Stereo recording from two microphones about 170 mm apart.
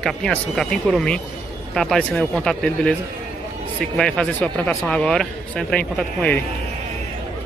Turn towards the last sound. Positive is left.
turn(degrees=5)  # may be behind; listen again after turning